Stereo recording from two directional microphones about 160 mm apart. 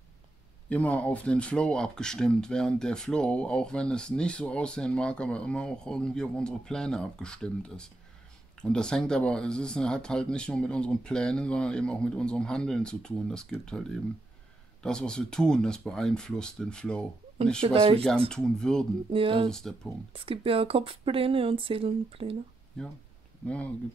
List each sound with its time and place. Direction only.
0.7 s speech: 10° left (ahead or behind)
17.6 s speech: 35° right (ahead or behind)
18.3 s speech: 5° left (ahead or behind)
19.0 s speech: 35° right (ahead or behind)
19.5 s speech: 5° left (ahead or behind)
20.1 s speech: 35° right (ahead or behind)
22.8 s speech: 5° left (ahead or behind)